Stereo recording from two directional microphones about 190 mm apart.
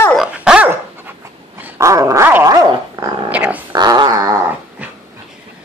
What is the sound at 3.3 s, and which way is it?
Dog, 10° right (ahead or behind).